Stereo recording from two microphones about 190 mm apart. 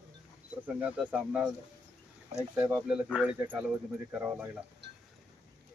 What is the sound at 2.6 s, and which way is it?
Speech, 15° right (ahead or behind).